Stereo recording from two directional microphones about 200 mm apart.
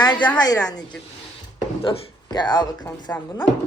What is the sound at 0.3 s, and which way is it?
Speech, 20° left (ahead or behind).